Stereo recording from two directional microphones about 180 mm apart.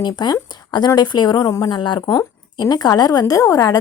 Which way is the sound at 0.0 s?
25° left (ahead or behind).